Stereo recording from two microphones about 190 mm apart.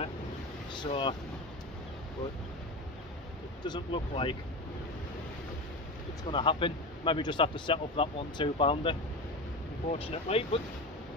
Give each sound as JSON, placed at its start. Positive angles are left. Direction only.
{"t": 0.7, "sound": "speech", "side_deg": 25}
{"t": 3.6, "sound": "a man's voice", "side_deg": 25}
{"t": 6.3, "sound": "a man's voice", "side_deg": 25}